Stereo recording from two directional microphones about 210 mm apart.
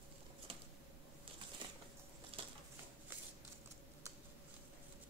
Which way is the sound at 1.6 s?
25° right (ahead or behind).